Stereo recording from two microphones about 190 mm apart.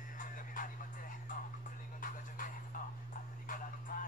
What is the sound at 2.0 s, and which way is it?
Music, 45° left (ahead or behind).